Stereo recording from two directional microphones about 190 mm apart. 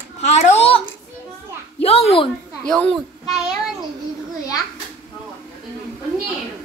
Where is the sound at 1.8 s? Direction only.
30° left (ahead or behind).